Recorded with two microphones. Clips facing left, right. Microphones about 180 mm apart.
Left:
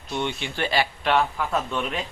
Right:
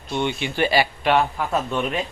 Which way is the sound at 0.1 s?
Centre (ahead or behind).